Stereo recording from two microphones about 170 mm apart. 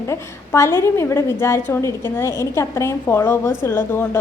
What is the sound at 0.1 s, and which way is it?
A woman's voice, 15° left (ahead or behind).